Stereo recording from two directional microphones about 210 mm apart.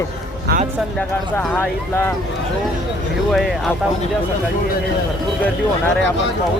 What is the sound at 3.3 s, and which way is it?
Speech, centre (ahead or behind).